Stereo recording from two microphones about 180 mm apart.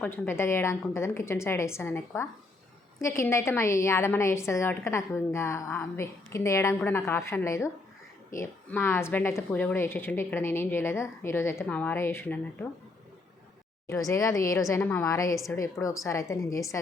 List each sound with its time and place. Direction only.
0.0 s a woman's voice: 10° left (ahead or behind)
13.8 s a woman's voice: 15° left (ahead or behind)